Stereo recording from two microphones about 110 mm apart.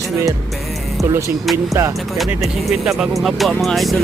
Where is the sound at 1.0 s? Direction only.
Centre (ahead or behind).